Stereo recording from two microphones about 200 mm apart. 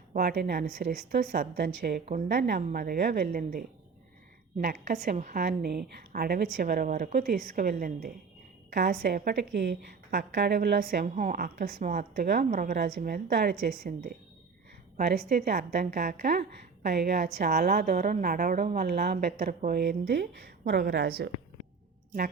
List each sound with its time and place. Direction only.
0.1 s a woman's voice: 50° right (ahead or behind)
0.8 s speech: 35° right (ahead or behind)
1.3 s a woman's voice: 55° right (ahead or behind)
2.0 s a woman's voice: 40° right (ahead or behind)
11.0 s a woman's voice: 40° right (ahead or behind)
15.3 s a woman's voice: 50° right (ahead or behind)